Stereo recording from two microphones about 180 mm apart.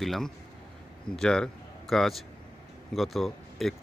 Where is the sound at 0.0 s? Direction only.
Centre (ahead or behind).